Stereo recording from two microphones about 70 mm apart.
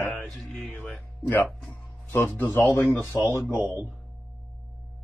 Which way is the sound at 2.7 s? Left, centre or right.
Left.